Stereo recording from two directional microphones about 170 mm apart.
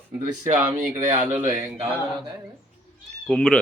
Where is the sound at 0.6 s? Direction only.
15° right (ahead or behind).